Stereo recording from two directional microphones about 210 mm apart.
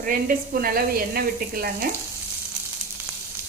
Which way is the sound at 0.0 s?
40° right (ahead or behind).